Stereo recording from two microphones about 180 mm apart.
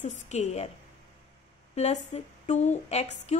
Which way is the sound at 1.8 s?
35° left (ahead or behind).